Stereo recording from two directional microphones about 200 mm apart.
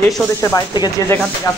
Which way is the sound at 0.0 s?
15° left (ahead or behind).